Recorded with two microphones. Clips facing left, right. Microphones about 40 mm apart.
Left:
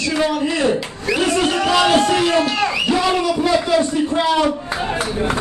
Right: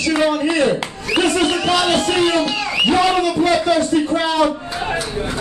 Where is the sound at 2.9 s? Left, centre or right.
Centre.